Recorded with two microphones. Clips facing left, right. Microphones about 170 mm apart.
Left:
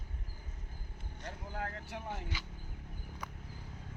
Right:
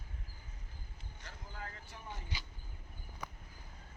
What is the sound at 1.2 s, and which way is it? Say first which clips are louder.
Vehicle: left 8 dB; 60° left (ahead or behind).